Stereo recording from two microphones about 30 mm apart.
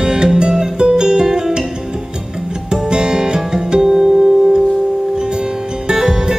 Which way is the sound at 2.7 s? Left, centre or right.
Right.